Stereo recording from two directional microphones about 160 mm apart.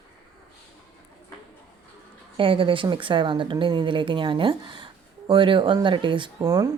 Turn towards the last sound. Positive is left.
turn(degrees=-25)  # may be behind; listen again after turning